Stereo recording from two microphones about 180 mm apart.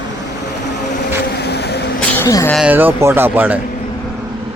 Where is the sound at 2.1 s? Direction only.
15° left (ahead or behind).